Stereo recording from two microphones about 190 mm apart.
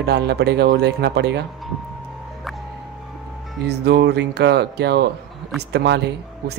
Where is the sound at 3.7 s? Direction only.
60° right (ahead or behind).